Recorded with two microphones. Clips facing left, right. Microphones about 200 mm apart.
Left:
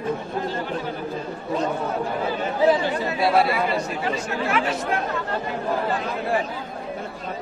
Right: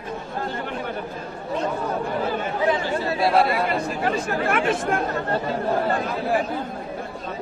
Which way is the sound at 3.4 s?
55° right (ahead or behind).